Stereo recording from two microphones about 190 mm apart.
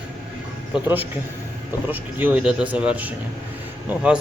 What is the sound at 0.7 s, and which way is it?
Speech, 10° right (ahead or behind).